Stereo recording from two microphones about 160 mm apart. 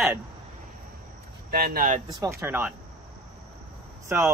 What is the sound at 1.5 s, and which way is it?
Speech, 70° right (ahead or behind).